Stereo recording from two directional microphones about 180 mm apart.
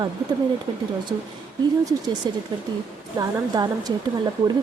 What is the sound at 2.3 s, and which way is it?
A woman's voice, 25° right (ahead or behind).